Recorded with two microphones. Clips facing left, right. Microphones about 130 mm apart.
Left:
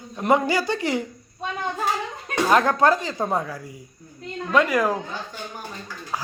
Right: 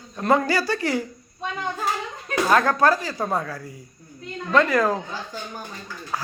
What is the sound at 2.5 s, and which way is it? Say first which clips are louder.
A man's voice: left 1 dB; 20° left (ahead or behind).